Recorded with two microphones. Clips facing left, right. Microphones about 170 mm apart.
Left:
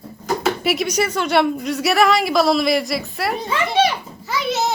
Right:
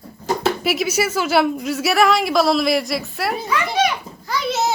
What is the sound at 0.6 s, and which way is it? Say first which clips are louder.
A woman's voice: even; centre (ahead or behind).